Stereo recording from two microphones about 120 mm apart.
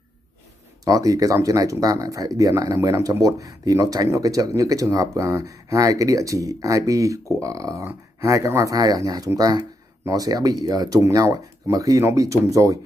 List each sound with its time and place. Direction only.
0.8 s speech: 30° right (ahead or behind)